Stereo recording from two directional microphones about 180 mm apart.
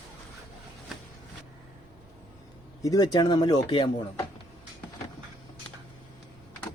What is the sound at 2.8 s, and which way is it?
Speech, 20° left (ahead or behind).